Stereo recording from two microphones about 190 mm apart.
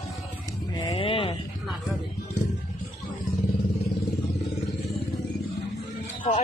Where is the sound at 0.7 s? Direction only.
25° left (ahead or behind).